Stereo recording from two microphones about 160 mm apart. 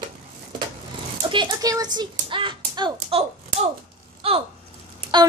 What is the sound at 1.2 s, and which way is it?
Speech, 30° right (ahead or behind).